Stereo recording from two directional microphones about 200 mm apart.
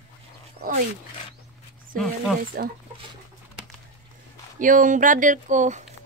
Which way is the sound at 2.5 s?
45° right (ahead or behind).